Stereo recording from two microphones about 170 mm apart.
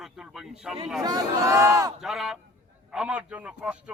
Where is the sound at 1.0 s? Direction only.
20° right (ahead or behind).